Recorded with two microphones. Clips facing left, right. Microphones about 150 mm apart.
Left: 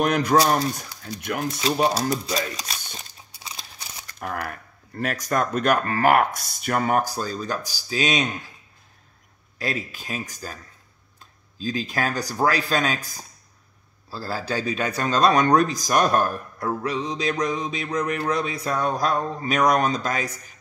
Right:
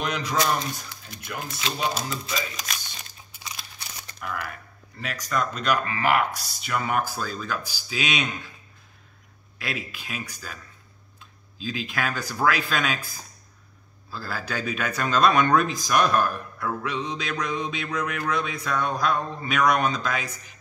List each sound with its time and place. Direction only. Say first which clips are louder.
0.0 s speech: left 7 dB; 55° left (ahead or behind)
1.6 s speech: left 6 dB; 35° left (ahead or behind)
4.2 s speech: left 3 dB; 45° left (ahead or behind)
9.6 s speech: left 4 dB; 40° left (ahead or behind)